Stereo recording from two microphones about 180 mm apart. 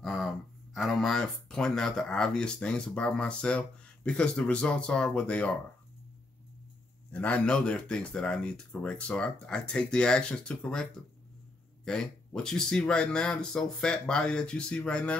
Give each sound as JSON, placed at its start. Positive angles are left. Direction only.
{"t": 0.0, "sound": "a sound", "side_deg": 0}
{"t": 0.7, "sound": "speech", "side_deg": 0}
{"t": 7.1, "sound": "speech", "side_deg": 10}